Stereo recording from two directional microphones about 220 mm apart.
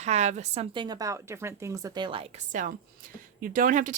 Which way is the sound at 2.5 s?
35° right (ahead or behind).